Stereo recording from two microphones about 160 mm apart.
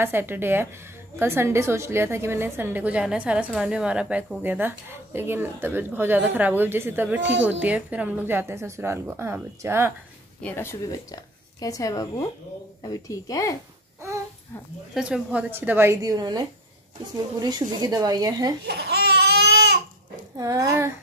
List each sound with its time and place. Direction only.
0.0 s a woman's voice: 15° right (ahead or behind)
10.4 s a woman's voice: 15° left (ahead or behind)
15.0 s a woman's voice: 5° right (ahead or behind); by 18.5 s 25° right (ahead or behind)
18.7 s a sound: 90° right
20.3 s speech: 20° right (ahead or behind)